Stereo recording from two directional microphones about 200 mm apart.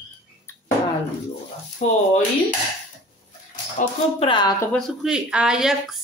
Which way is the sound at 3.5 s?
40° left (ahead or behind).